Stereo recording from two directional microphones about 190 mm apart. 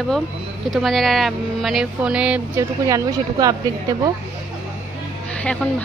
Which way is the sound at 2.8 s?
20° right (ahead or behind).